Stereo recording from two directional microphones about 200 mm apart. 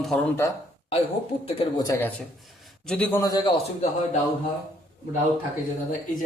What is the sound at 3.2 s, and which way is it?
Speech, 20° left (ahead or behind).